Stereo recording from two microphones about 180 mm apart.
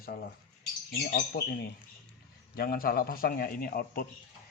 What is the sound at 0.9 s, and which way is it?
A man's voice, 55° left (ahead or behind).